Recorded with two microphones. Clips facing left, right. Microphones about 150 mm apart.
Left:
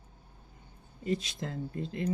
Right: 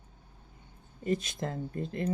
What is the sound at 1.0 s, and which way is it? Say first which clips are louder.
Speech: right 2 dB; 50° right (ahead or behind).